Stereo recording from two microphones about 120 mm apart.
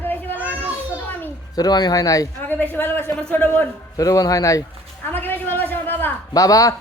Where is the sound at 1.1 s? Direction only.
15° left (ahead or behind).